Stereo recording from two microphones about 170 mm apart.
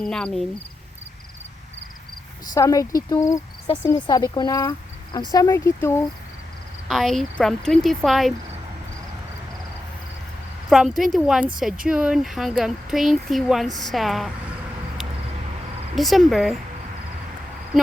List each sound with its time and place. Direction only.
0.0 s speech: 5° left (ahead or behind)
2.5 s speech: 20° left (ahead or behind)
6.8 s speech: centre (ahead or behind)
10.7 s speech: centre (ahead or behind)
16.0 s speech: centre (ahead or behind)